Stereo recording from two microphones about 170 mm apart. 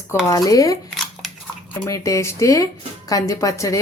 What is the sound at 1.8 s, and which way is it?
Speech, 20° left (ahead or behind).